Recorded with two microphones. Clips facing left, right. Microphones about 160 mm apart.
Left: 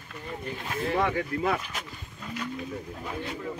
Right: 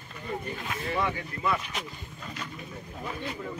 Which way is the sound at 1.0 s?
60° left (ahead or behind).